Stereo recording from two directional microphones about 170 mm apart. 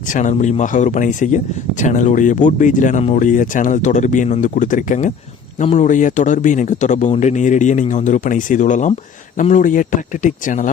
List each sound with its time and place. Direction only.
0.1 s speech: 45° left (ahead or behind)